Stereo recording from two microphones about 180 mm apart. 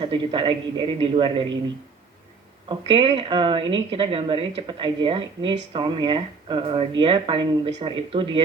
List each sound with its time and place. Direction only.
0.0 s a woman's voice: 25° right (ahead or behind)
2.6 s a woman's voice: 30° right (ahead or behind)